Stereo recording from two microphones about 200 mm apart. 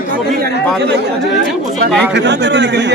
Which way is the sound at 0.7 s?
60° right (ahead or behind).